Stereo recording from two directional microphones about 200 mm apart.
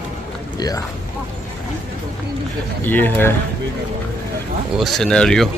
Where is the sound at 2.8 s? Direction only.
10° left (ahead or behind).